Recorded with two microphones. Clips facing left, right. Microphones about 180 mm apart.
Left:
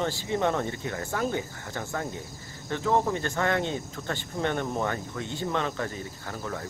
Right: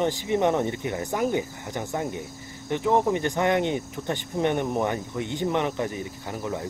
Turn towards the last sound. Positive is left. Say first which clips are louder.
# right 4 dB
turn(degrees=-15)  # may be behind; listen again after turning